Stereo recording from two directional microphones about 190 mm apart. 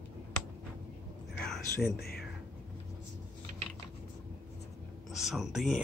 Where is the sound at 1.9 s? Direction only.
55° left (ahead or behind).